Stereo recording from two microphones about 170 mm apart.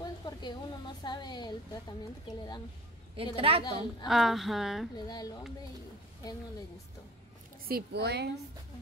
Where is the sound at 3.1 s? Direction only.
35° right (ahead or behind).